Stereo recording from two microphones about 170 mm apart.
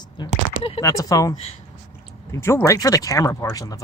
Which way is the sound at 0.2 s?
25° left (ahead or behind).